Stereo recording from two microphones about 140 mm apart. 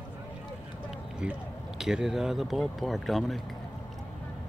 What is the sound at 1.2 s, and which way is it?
Speech, 5° right (ahead or behind).